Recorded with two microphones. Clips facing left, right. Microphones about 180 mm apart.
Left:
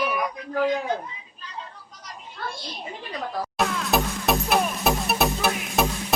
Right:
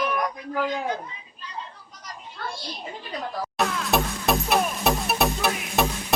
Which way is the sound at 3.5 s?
Centre (ahead or behind).